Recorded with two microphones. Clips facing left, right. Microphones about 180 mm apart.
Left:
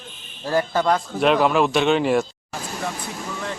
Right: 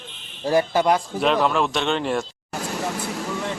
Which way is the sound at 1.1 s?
5° left (ahead or behind).